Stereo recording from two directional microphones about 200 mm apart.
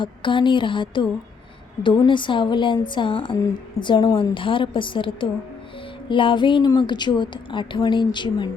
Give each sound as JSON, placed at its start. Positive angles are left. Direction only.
{"t": 0.0, "sound": "a woman's voice", "side_deg": 25}